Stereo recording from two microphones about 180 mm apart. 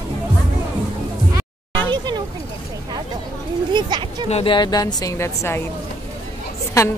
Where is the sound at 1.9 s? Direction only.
25° right (ahead or behind).